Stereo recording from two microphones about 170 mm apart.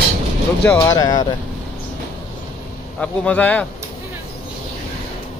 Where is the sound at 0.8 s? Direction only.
20° left (ahead or behind).